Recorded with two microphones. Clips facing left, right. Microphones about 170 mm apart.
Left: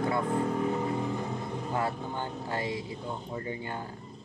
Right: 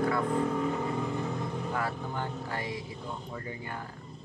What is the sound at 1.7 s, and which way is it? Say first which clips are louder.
Speech: left 2 dB; 25° left (ahead or behind).